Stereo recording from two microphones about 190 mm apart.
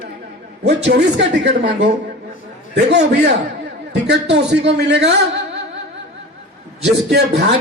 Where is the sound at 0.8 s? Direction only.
65° right (ahead or behind).